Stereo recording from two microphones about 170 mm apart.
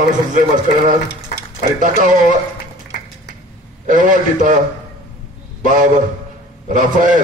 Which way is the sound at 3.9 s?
50° right (ahead or behind).